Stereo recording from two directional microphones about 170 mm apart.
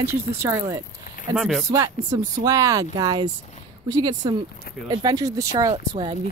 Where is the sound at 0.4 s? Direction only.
15° right (ahead or behind).